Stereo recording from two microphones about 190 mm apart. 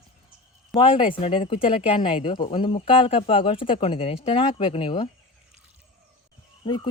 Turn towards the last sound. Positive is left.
turn(degrees=25)  # may be behind; listen again after turning